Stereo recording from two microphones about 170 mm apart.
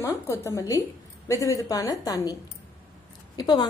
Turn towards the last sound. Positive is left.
turn(degrees=25)  # may be behind; listen again after turning